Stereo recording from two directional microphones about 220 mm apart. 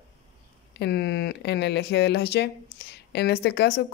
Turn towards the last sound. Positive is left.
turn(degrees=50)  # may be behind; listen again after turning